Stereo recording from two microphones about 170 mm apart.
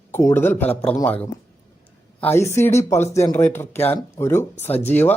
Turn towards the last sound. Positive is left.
turn(degrees=10)  # may be behind; listen again after turning